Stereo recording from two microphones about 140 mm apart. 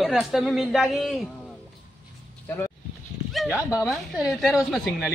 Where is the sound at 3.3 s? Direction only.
5° right (ahead or behind).